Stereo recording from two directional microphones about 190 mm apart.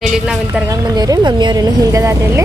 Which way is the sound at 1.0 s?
20° right (ahead or behind).